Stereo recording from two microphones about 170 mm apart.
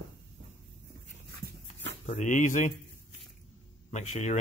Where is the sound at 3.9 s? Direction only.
45° left (ahead or behind).